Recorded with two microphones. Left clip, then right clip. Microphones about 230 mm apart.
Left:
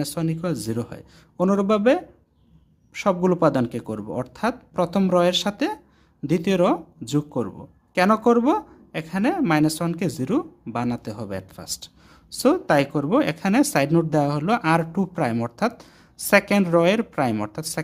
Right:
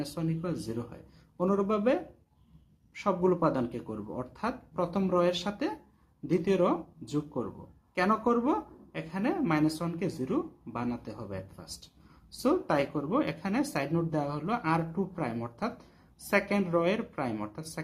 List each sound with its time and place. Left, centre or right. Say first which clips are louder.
0.0 s a woman's voice: left 8 dB; left